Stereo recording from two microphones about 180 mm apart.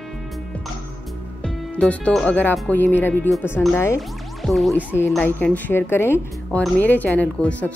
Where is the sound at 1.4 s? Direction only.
5° left (ahead or behind).